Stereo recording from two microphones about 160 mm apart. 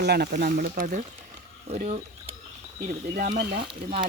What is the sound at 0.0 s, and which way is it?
Speech, 90° right.